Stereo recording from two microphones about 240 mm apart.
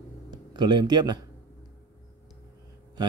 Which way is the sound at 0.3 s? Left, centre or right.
Centre.